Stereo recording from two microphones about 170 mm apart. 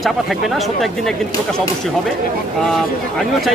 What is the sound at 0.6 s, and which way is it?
Speech, centre (ahead or behind).